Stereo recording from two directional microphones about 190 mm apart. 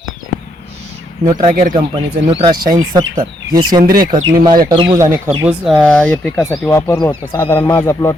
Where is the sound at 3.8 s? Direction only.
50° right (ahead or behind).